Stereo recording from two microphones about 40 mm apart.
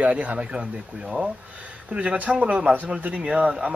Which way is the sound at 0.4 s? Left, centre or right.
Right.